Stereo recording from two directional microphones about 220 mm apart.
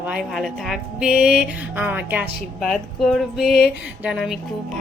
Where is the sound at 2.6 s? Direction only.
Centre (ahead or behind).